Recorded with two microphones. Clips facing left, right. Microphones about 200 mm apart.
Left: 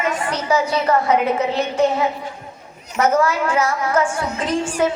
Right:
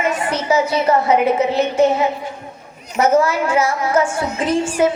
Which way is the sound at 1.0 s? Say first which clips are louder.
Right 3 dB; 5° right (ahead or behind).